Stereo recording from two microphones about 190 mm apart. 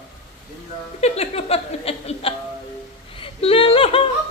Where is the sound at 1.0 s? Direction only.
30° left (ahead or behind).